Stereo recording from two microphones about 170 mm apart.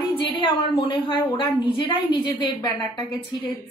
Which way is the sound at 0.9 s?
25° left (ahead or behind).